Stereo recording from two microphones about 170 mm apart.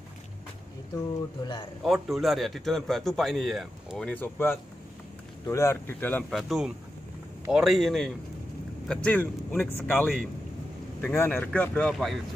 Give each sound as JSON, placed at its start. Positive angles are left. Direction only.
{"t": 1.4, "sound": "a man's voice", "side_deg": 25}
{"t": 1.8, "sound": "a man's voice", "side_deg": 0}
{"t": 4.1, "sound": "speech", "side_deg": 10}
{"t": 6.3, "sound": "a man's voice", "side_deg": 0}